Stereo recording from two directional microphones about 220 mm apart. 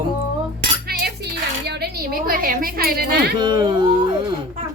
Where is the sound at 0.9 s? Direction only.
45° right (ahead or behind).